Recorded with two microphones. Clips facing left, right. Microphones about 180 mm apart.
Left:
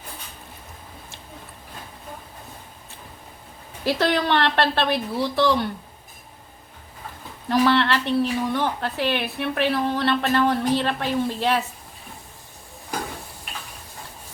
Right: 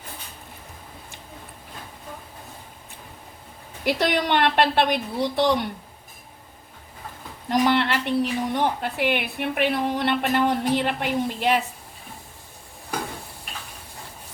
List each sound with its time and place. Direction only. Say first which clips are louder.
3.8 s a woman's voice: left 1 dB; 15° right (ahead or behind)
7.5 s a woman's voice: left 1 dB; 15° right (ahead or behind)